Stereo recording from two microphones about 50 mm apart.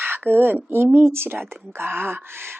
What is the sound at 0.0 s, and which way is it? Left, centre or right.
Speech, right.